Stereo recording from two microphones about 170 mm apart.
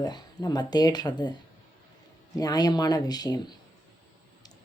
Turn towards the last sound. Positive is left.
turn(degrees=25)  # may be behind; listen again after turning